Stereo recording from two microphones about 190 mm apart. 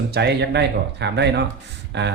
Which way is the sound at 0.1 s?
60° right (ahead or behind).